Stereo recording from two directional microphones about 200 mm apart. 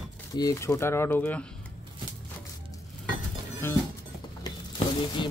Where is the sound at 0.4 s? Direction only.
15° left (ahead or behind).